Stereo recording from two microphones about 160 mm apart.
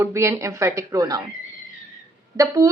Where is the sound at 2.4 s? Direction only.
20° right (ahead or behind).